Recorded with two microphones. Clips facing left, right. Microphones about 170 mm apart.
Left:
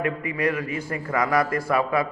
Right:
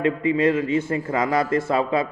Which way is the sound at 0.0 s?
25° right (ahead or behind).